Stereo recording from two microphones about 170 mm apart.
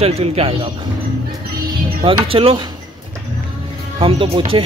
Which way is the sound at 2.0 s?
35° right (ahead or behind).